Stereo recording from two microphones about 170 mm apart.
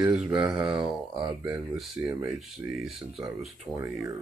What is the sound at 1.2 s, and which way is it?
Speech, 20° right (ahead or behind).